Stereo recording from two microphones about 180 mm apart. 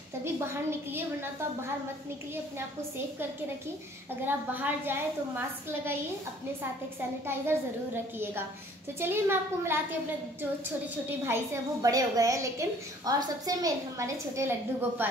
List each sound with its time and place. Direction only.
0.2 s a woman's voice: 15° right (ahead or behind)
4.6 s a woman's voice: 10° right (ahead or behind)
7.2 s a woman's voice: 10° right (ahead or behind)
11.1 s a woman's voice: 15° right (ahead or behind)